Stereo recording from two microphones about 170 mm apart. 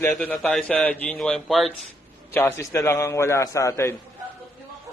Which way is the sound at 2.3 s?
15° left (ahead or behind).